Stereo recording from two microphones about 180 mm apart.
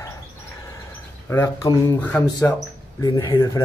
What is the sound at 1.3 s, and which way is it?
Speech, 15° left (ahead or behind).